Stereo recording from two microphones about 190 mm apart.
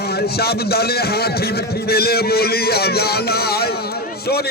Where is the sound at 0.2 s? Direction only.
55° left (ahead or behind).